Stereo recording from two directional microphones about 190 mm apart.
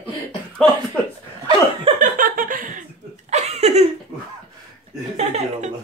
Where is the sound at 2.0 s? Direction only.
45° right (ahead or behind).